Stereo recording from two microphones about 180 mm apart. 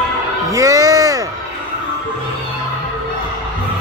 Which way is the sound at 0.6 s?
20° right (ahead or behind).